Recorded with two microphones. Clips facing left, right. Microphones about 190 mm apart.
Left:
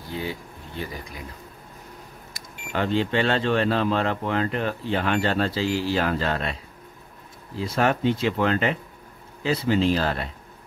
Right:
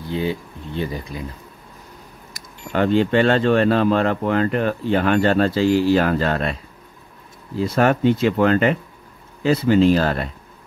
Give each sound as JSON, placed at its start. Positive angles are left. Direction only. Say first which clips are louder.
{"t": 0.1, "sound": "speech", "louder": "right 7 dB", "side_deg": -25}
{"t": 2.7, "sound": "speech", "louder": "right 6 dB", "side_deg": -50}
{"t": 7.5, "sound": "speech", "louder": "right 5 dB", "side_deg": -50}